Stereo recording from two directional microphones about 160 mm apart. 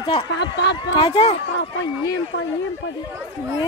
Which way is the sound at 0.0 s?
35° left (ahead or behind).